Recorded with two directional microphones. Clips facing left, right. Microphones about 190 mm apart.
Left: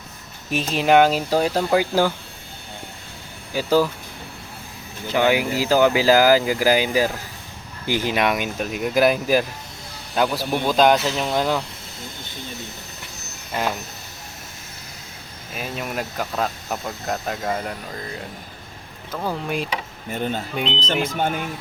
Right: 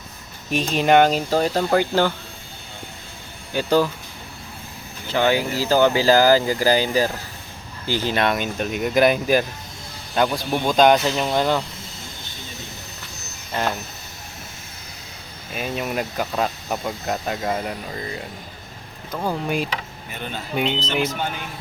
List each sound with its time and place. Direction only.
0.5 s speech: 5° left (ahead or behind)
3.5 s speech: 5° left (ahead or behind)
5.1 s speech: 15° left (ahead or behind)
13.5 s speech: 5° left (ahead or behind)
15.5 s speech: centre (ahead or behind)
20.1 s speech: 45° left (ahead or behind)
20.6 s speech: 5° right (ahead or behind)
20.8 s speech: 50° left (ahead or behind)